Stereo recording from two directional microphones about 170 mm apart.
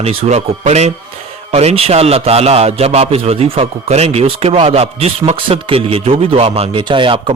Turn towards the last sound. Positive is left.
turn(degrees=-30)  # may be behind; listen again after turning